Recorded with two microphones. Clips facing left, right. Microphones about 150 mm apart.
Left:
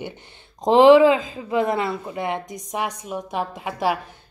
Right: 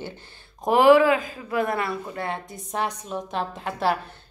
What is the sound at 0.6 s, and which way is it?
Speech, 20° left (ahead or behind).